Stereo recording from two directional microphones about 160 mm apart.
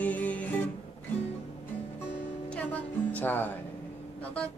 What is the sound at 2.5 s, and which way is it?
Speech, 10° left (ahead or behind).